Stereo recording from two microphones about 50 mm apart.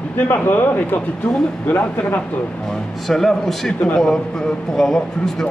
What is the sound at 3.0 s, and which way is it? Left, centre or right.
Speech, centre.